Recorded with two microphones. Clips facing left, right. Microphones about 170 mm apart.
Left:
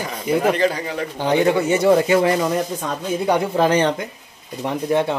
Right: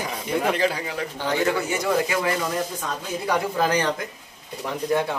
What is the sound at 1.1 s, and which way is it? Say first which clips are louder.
Speech: left 7 dB; 20° left (ahead or behind).